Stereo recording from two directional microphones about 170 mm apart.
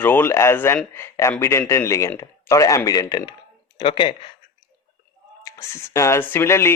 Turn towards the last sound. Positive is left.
turn(degrees=15)  # may be behind; listen again after turning